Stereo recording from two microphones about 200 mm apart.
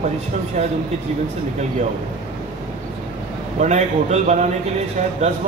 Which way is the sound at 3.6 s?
35° right (ahead or behind).